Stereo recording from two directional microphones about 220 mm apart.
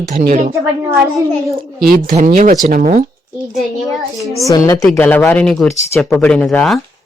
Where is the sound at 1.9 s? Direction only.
40° right (ahead or behind).